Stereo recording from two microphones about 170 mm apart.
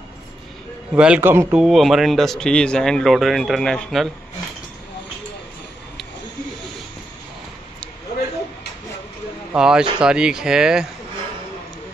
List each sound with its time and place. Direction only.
0.9 s a man's voice: 5° right (ahead or behind)
9.5 s a man's voice: 5° right (ahead or behind)